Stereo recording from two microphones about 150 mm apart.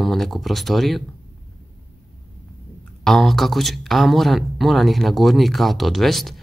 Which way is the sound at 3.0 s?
Centre (ahead or behind).